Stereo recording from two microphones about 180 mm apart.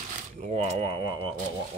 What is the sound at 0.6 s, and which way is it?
Speech, 30° right (ahead or behind).